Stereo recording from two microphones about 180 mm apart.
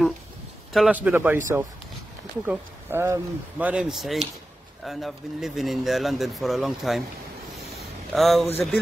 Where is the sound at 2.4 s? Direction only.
10° right (ahead or behind).